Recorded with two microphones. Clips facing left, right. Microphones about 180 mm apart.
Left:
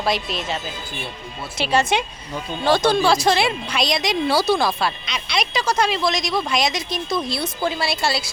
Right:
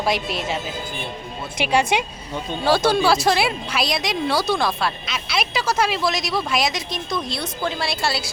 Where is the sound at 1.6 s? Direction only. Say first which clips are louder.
Even; 10° right (ahead or behind).